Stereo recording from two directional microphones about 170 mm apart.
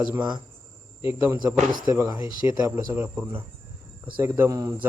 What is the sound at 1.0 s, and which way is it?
Speech, 15° right (ahead or behind).